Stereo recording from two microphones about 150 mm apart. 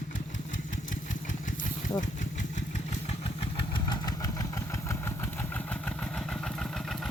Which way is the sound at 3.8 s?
25° left (ahead or behind).